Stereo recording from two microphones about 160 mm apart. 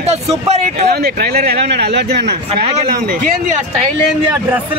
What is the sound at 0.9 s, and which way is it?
A man's voice, 80° right.